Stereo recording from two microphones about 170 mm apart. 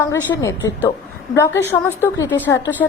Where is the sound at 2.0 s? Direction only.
15° left (ahead or behind).